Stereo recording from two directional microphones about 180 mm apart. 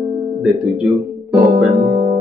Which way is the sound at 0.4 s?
Centre (ahead or behind).